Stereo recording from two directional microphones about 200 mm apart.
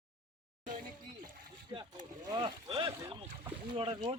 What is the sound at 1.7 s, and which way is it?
Vehicle, 15° right (ahead or behind).